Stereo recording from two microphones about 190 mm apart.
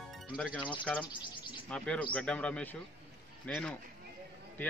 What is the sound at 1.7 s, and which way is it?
A man's voice, 5° left (ahead or behind).